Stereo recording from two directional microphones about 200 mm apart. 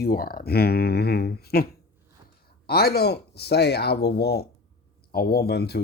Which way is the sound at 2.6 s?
50° left (ahead or behind).